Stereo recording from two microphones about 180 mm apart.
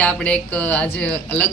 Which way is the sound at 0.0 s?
5° left (ahead or behind).